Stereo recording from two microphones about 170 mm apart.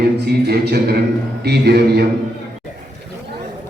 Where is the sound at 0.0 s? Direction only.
70° right (ahead or behind).